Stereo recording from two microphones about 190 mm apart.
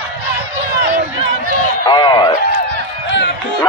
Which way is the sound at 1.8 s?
25° left (ahead or behind).